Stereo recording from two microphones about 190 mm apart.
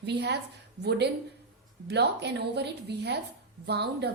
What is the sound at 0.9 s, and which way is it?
A woman's voice, 60° right (ahead or behind).